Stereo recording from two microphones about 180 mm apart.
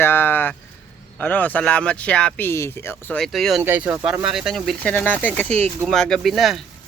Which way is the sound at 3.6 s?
10° right (ahead or behind).